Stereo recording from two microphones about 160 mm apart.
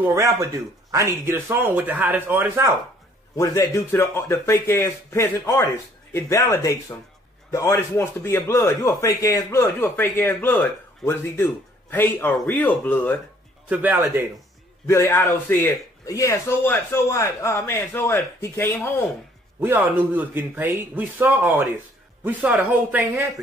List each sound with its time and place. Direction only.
0.0 s a man's voice: 20° right (ahead or behind)
3.3 s a man's voice: 20° left (ahead or behind)
13.7 s a man's voice: 10° right (ahead or behind)
14.9 s a man's voice: 15° left (ahead or behind)
19.6 s a man's voice: 10° right (ahead or behind)